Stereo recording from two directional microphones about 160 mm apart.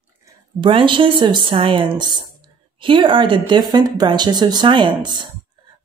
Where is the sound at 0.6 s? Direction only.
30° right (ahead or behind).